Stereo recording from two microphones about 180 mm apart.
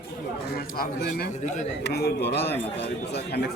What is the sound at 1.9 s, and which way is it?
Speech, 65° left (ahead or behind).